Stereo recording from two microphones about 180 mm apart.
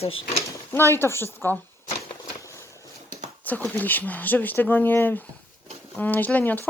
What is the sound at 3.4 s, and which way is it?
Speech, 10° left (ahead or behind).